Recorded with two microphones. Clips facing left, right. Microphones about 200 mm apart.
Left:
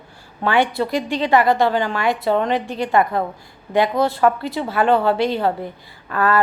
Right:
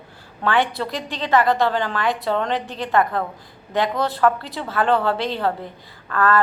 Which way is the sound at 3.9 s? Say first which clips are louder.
Left 3 dB; 15° left (ahead or behind).